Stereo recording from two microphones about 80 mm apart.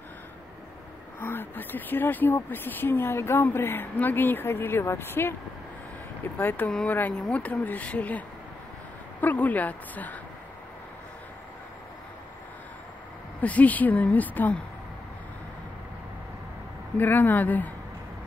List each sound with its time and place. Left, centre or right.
1.2 s speech: left
6.3 s speech: left
9.2 s speech: left
13.4 s speech: centre
16.9 s speech: left